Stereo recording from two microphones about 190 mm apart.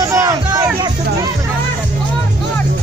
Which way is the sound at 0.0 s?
20° right (ahead or behind).